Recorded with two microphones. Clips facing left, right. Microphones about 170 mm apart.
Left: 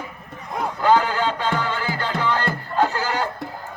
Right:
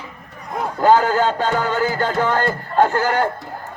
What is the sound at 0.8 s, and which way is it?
Music, 45° right (ahead or behind).